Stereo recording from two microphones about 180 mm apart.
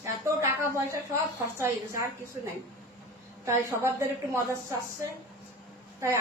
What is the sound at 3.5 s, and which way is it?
A woman's voice, 15° right (ahead or behind).